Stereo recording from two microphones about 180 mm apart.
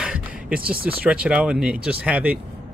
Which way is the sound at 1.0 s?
5° right (ahead or behind).